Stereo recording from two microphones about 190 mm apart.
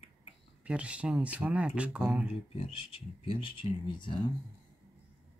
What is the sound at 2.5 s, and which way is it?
Speech, 25° left (ahead or behind).